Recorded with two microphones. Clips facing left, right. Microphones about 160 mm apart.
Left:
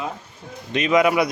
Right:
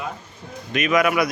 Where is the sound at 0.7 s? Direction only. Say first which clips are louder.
Left 2 dB; 25° left (ahead or behind).